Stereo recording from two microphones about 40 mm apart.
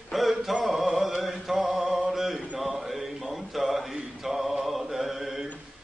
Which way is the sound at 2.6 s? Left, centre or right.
Centre.